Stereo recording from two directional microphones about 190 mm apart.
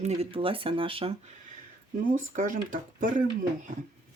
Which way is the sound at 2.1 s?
45° right (ahead or behind).